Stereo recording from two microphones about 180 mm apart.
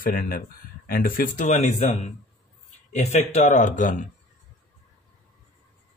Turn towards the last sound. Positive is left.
turn(degrees=45)  # may be behind; listen again after turning